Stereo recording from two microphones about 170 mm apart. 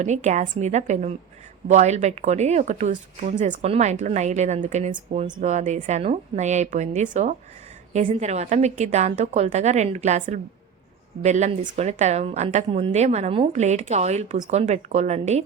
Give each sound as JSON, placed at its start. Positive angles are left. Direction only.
{"t": 0.0, "sound": "speech", "side_deg": -45}